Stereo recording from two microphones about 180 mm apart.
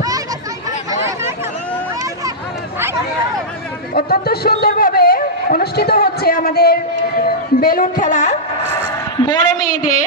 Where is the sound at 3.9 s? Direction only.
55° left (ahead or behind).